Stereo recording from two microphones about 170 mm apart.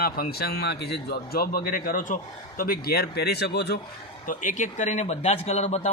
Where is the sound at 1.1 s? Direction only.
65° left (ahead or behind).